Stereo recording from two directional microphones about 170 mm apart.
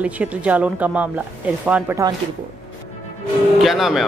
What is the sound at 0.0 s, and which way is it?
A woman's voice, 10° right (ahead or behind).